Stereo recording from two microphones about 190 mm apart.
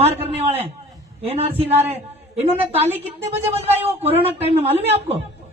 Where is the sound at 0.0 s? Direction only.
30° right (ahead or behind).